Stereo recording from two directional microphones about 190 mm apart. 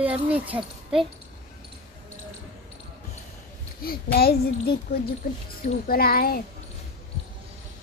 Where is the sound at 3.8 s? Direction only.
55° left (ahead or behind).